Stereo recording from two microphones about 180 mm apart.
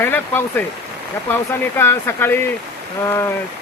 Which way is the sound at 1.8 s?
15° left (ahead or behind).